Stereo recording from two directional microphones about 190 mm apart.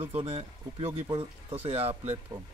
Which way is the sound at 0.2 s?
30° right (ahead or behind).